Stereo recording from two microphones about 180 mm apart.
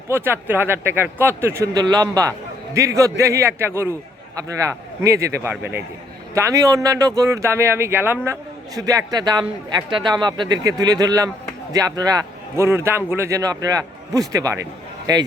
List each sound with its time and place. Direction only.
0.1 s speech: 10° right (ahead or behind)